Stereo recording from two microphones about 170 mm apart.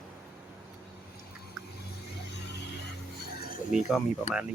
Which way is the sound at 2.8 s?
65° left (ahead or behind).